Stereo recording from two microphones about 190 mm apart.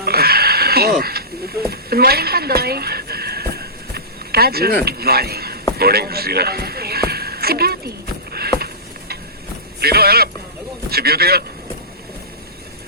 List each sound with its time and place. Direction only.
0.0 s goat: 55° right (ahead or behind)
1.7 s a sound: 55° right (ahead or behind)
9.8 s speech: 55° right (ahead or behind)